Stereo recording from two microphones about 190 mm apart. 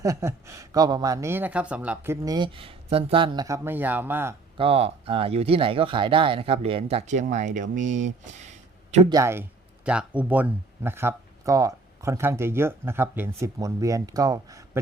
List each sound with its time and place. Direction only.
0.0 s speech: 15° right (ahead or behind)
4.5 s speech: 30° right (ahead or behind)
9.0 s speech: 15° right (ahead or behind)